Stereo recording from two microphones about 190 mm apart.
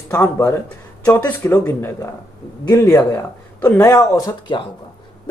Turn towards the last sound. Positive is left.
turn(degrees=20)  # may be behind; listen again after turning